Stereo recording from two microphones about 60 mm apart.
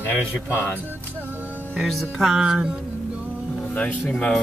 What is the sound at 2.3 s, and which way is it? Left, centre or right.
Music, centre.